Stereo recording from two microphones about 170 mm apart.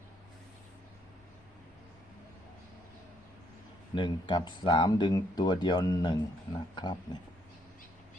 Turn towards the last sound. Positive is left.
turn(degrees=25)  # may be behind; listen again after turning